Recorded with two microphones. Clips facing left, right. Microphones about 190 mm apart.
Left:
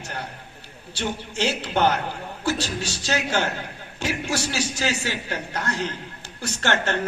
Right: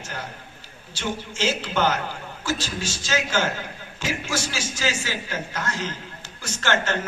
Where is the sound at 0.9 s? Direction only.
60° left (ahead or behind).